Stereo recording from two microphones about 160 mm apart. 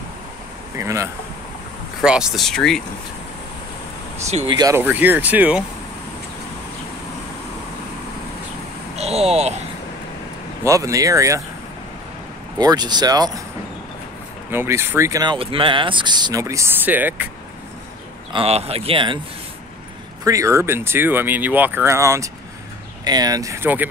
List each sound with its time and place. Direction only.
0.7 s speech: 20° right (ahead or behind)
2.0 s speech: 5° right (ahead or behind)
4.5 s speech: 25° right (ahead or behind)
4.7 s speech: 10° right (ahead or behind)
8.9 s speech: 40° right (ahead or behind)
10.6 s speech: 20° right (ahead or behind)
12.5 s speech: 25° right (ahead or behind)
14.5 s speech: 15° right (ahead or behind)
15.3 s speech: 35° right (ahead or behind); by 17.3 s 10° right (ahead or behind)
18.3 s speech: 40° right (ahead or behind)
20.2 s speech: 20° right (ahead or behind)